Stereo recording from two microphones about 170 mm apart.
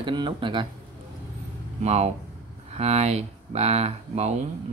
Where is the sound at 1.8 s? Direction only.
40° right (ahead or behind).